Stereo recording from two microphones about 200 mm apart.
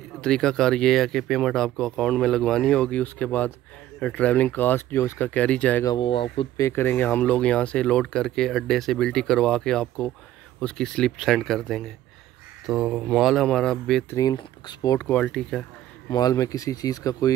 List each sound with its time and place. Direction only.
0.2 s speech: 5° left (ahead or behind)
5.9 s speech: 25° left (ahead or behind)
6.6 s speech: 10° left (ahead or behind)
14.1 s speech: 20° left (ahead or behind)
16.1 s speech: 20° left (ahead or behind)